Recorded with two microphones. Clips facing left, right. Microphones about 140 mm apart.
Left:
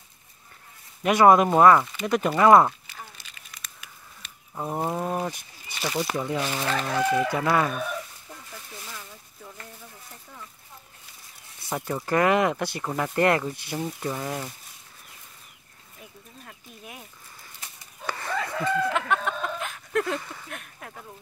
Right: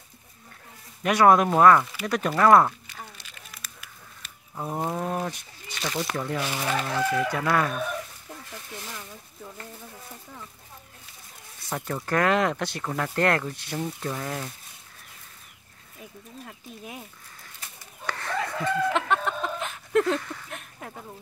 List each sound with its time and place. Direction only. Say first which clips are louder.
1.0 s speech: left 2 dB; 5° left (ahead or behind)
1.9 s a sound: left 3 dB; centre (ahead or behind)
4.6 s speech: left 1 dB; 5° left (ahead or behind)
6.6 s speech: even; 10° right (ahead or behind)
6.9 s speech: left 4 dB; 15° left (ahead or behind)
7.2 s speech: left 1 dB; 5° left (ahead or behind)
11.7 s speech: left 2 dB; 10° left (ahead or behind)
18.0 s chicken: even; 10° left (ahead or behind)
19.0 s a sound: right 1 dB; centre (ahead or behind)
20.1 s speech: right 4 dB; 10° left (ahead or behind)